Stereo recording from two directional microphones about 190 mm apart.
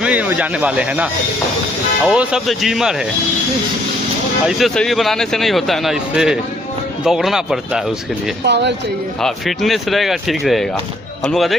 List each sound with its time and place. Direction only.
0.0 s speech: 5° right (ahead or behind)
2.0 s speech: 5° right (ahead or behind)
4.4 s speech: centre (ahead or behind)
8.4 s speech: 65° right (ahead or behind)
9.2 s speech: centre (ahead or behind)